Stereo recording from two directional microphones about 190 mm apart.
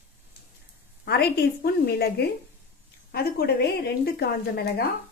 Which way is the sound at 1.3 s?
60° left (ahead or behind).